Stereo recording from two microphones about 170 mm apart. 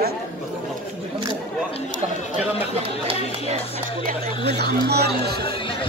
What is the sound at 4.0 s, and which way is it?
Speech, 55° right (ahead or behind).